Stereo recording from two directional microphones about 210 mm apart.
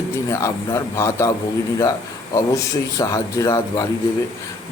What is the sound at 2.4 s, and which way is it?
A man's voice, 15° left (ahead or behind).